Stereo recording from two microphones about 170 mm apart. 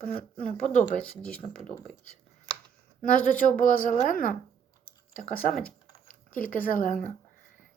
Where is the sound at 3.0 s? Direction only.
50° left (ahead or behind).